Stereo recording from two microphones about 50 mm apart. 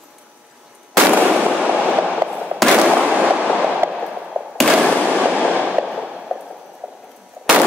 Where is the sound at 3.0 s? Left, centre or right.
Right.